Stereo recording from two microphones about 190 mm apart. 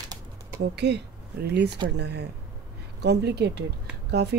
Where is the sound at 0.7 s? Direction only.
60° right (ahead or behind).